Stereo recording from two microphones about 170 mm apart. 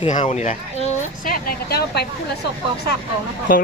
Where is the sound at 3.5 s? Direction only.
55° left (ahead or behind).